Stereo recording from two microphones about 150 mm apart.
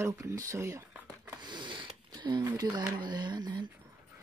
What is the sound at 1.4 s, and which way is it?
Speech, 30° right (ahead or behind).